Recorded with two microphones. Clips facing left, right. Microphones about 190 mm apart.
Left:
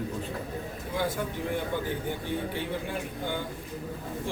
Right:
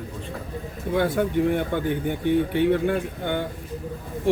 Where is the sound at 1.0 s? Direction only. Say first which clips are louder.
Right 9 dB; 65° right (ahead or behind).